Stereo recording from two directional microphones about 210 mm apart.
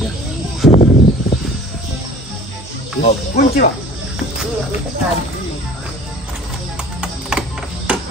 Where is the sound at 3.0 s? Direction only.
45° left (ahead or behind).